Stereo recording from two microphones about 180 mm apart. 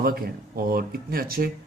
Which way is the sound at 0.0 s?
55° right (ahead or behind).